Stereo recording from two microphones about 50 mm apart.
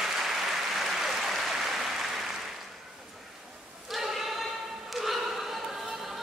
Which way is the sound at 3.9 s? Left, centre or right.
Centre.